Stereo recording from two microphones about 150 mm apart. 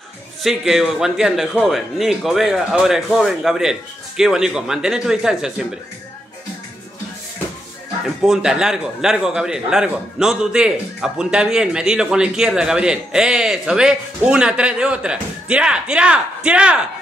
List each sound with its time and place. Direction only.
0.4 s a man's voice: centre (ahead or behind)
8.2 s a man's voice: 5° right (ahead or behind)